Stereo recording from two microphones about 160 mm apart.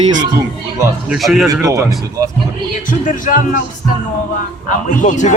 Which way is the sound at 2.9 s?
55° left (ahead or behind).